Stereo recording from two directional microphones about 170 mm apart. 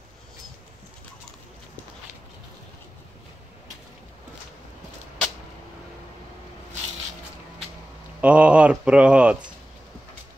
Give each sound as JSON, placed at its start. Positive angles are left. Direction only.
{"t": 8.2, "sound": "speech", "side_deg": -5}